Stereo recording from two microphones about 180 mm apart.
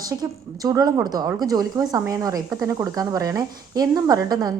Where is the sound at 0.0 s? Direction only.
20° right (ahead or behind).